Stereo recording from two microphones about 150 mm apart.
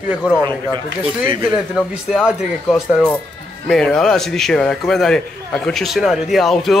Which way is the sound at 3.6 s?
5° left (ahead or behind).